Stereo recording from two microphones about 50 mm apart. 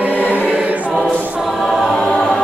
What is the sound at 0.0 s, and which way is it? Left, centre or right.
Choir, right.